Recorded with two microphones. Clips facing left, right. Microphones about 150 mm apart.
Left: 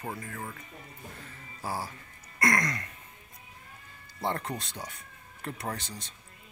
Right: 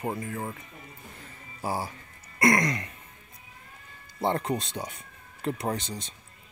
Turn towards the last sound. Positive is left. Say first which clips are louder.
# right 6 dB
turn(degrees=-20)  # may be behind; listen again after turning